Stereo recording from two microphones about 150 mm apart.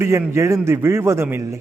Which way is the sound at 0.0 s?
15° right (ahead or behind).